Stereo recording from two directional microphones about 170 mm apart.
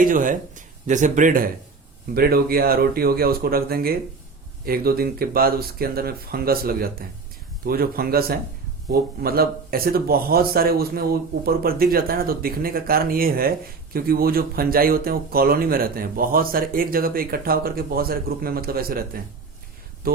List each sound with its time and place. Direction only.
0.0 s speech: 55° right (ahead or behind)
2.1 s speech: 65° right (ahead or behind)